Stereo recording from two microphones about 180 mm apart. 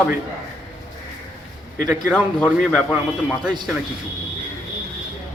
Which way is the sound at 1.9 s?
5° left (ahead or behind).